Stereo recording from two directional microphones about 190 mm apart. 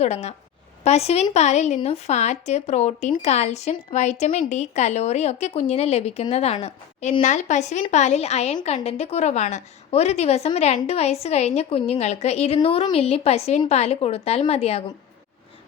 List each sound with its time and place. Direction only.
0.0 s a woman's voice: 35° left (ahead or behind)